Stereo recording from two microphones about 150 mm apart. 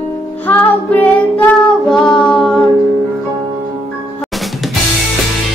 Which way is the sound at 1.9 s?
5° left (ahead or behind).